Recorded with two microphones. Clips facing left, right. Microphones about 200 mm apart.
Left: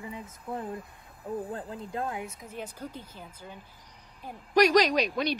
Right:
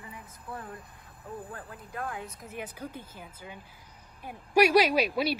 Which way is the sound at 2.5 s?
10° right (ahead or behind).